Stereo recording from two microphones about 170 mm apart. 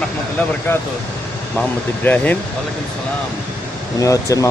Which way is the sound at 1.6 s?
10° left (ahead or behind).